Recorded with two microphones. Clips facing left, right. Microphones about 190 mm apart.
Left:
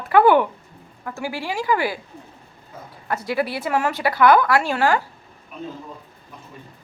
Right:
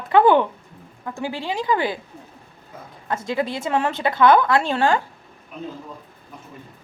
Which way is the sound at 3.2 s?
20° right (ahead or behind).